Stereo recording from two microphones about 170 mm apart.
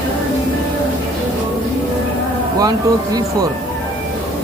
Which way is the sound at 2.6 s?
20° right (ahead or behind).